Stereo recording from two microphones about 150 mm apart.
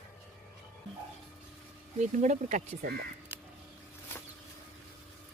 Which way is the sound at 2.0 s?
55° right (ahead or behind).